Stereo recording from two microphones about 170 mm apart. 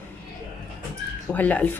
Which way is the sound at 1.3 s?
10° left (ahead or behind).